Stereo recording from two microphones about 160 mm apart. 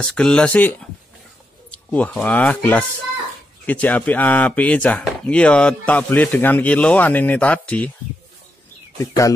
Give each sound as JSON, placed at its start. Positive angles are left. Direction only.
{"t": 0.0, "sound": "speech", "side_deg": 5}
{"t": 9.0, "sound": "speech", "side_deg": 20}